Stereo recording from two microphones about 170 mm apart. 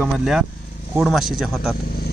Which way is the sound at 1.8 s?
75° left (ahead or behind).